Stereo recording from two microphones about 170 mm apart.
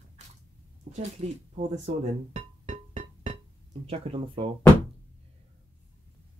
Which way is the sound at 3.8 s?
35° right (ahead or behind).